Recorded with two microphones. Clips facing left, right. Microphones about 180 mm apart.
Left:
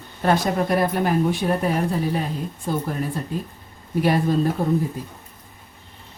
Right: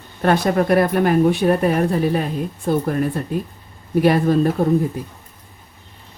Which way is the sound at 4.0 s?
65° right (ahead or behind).